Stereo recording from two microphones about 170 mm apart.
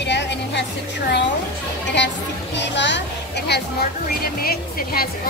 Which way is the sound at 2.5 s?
90° left.